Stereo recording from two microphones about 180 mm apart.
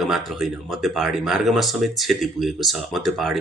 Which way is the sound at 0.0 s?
Centre (ahead or behind).